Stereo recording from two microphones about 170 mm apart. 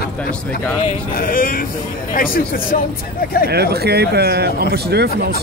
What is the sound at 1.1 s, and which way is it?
Speech, 55° left (ahead or behind).